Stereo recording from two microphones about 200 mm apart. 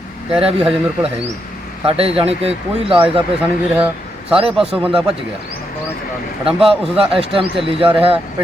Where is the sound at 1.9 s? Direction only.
30° right (ahead or behind).